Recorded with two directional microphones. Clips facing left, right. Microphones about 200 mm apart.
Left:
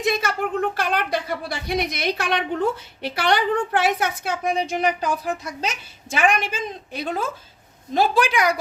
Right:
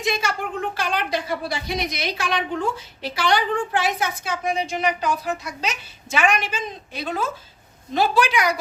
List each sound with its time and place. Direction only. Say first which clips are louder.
0.0 s a woman's voice: left 2 dB; 55° left (ahead or behind)
4.8 s a woman's voice: left 1 dB; 50° left (ahead or behind)